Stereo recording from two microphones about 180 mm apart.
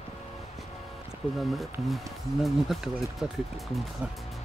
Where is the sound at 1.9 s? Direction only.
Centre (ahead or behind).